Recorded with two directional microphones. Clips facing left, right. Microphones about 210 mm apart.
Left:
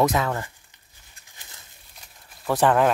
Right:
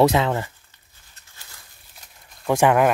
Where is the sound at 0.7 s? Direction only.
15° left (ahead or behind).